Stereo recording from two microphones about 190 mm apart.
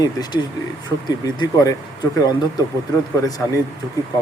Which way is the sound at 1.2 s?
20° left (ahead or behind).